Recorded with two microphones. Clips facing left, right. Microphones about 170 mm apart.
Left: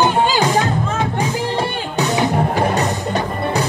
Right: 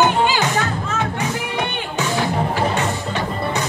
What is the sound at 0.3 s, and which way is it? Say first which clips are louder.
Music: left 4 dB; 35° left (ahead or behind).